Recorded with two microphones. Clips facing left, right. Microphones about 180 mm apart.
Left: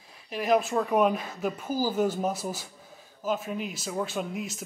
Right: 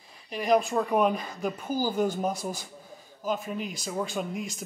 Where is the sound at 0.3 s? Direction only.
5° left (ahead or behind).